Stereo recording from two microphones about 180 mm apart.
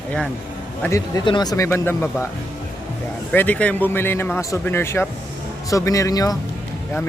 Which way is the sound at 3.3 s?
10° left (ahead or behind).